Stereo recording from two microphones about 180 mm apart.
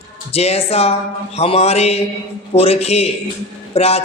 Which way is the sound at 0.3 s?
35° left (ahead or behind).